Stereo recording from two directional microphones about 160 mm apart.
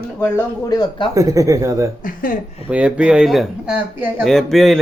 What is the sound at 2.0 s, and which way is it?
Speech, 60° left (ahead or behind).